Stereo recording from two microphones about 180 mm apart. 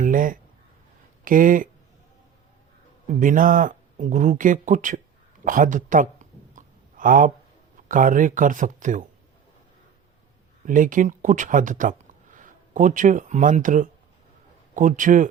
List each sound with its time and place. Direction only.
0.0 s a sound: 50° right (ahead or behind)
1.2 s speech: 50° right (ahead or behind)
3.2 s speech: 50° right (ahead or behind)
6.5 s a sound: 45° right (ahead or behind)
7.9 s speech: 50° right (ahead or behind)
10.7 s speech: 45° right (ahead or behind)